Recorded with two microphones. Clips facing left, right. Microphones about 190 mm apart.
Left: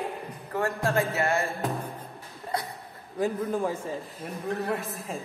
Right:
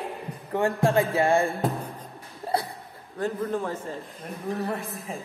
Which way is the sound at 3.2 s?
10° left (ahead or behind).